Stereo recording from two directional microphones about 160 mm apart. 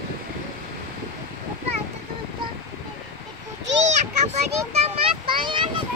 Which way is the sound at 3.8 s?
45° right (ahead or behind).